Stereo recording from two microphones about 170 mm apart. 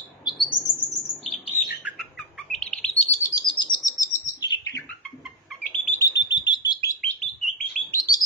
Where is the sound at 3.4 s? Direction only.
30° left (ahead or behind).